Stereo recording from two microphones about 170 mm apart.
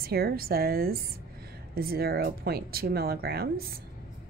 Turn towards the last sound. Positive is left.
turn(degrees=-65)  # may be behind; listen again after turning